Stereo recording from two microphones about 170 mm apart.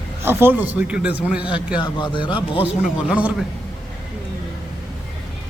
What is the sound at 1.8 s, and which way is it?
Speech, 30° left (ahead or behind).